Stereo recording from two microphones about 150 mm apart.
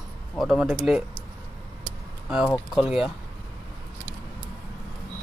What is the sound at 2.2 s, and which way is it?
Speech, 5° right (ahead or behind).